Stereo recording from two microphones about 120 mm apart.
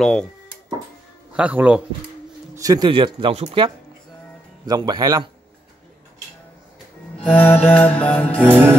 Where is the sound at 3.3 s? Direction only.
65° right (ahead or behind).